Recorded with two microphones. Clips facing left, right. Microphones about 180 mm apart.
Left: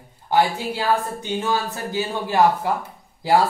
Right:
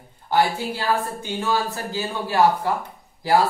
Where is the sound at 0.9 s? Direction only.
20° left (ahead or behind).